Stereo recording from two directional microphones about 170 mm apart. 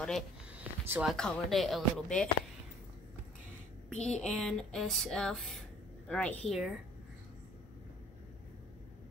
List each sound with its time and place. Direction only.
0.5 s a sound: 10° right (ahead or behind)
1.0 s speech: 5° left (ahead or behind)
3.9 s speech: 40° left (ahead or behind)
4.2 s speech: 5° left (ahead or behind)